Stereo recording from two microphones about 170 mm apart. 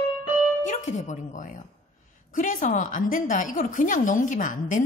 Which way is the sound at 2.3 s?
50° left (ahead or behind).